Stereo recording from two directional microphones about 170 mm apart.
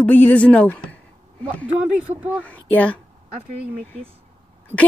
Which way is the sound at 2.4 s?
10° left (ahead or behind).